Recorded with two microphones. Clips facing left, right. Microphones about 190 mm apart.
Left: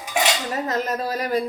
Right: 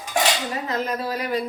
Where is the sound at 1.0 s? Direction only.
40° left (ahead or behind).